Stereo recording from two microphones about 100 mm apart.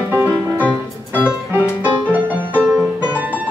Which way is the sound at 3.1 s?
15° right (ahead or behind).